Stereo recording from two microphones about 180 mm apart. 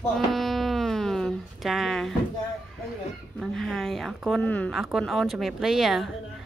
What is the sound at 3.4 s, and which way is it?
A woman's voice, centre (ahead or behind).